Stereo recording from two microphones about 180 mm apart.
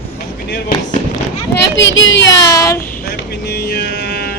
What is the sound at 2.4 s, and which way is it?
Speech, 20° left (ahead or behind).